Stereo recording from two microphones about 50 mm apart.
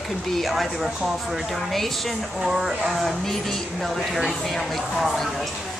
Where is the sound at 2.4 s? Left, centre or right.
Centre.